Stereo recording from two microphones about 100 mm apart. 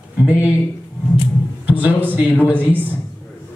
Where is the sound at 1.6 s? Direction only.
20° right (ahead or behind).